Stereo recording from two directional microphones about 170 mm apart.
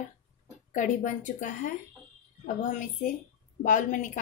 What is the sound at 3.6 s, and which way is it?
Speech, 50° left (ahead or behind).